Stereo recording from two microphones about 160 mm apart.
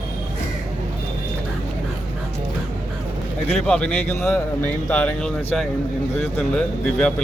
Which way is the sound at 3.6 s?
5° left (ahead or behind).